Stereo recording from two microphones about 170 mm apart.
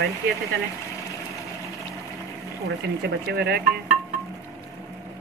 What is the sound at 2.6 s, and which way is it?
Speech, 75° right (ahead or behind).